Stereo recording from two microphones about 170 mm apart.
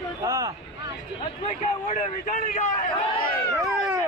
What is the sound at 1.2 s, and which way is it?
A man's voice, 40° left (ahead or behind).